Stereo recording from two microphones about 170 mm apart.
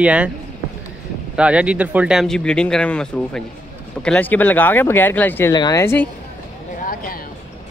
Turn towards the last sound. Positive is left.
turn(degrees=55)  # may be behind; listen again after turning